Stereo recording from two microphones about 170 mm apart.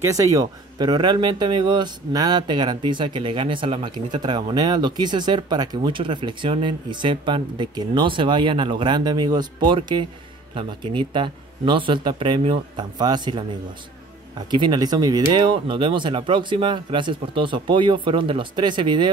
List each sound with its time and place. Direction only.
0.0 s speech: 20° right (ahead or behind)